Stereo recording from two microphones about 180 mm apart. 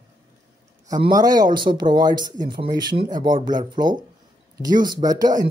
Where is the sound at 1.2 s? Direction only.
20° right (ahead or behind).